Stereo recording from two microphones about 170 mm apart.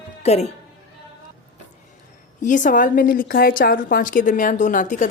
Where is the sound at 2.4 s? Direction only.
50° left (ahead or behind).